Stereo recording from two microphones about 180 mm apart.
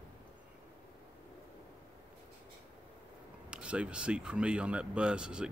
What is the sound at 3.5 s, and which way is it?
Speech, 5° right (ahead or behind).